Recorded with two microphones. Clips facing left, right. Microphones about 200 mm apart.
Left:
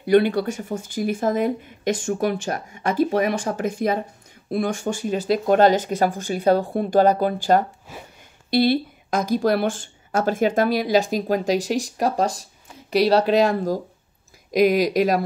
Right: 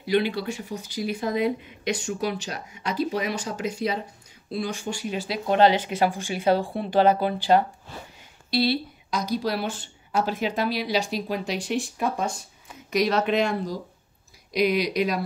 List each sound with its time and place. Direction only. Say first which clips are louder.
0.0 s speech: left 7 dB; 55° left (ahead or behind)